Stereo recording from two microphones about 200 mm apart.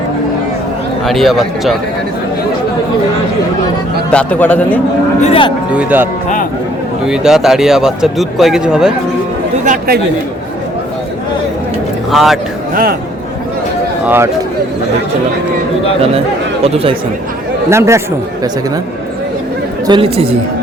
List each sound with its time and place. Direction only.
1.0 s speech: centre (ahead or behind)
4.1 s speech: 5° left (ahead or behind)
5.2 s speech: 30° left (ahead or behind)
5.7 s speech: 10° right (ahead or behind)
9.6 s speech: 50° right (ahead or behind)
12.1 s speech: centre (ahead or behind)
12.7 s speech: 50° right (ahead or behind)
16.6 s a woman's voice: 30° right (ahead or behind)
17.7 s speech: 15° right (ahead or behind)
19.9 s a woman's voice: 25° right (ahead or behind)